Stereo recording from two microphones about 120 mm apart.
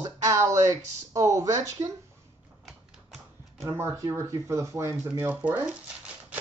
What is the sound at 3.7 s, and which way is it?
Speech, 20° right (ahead or behind).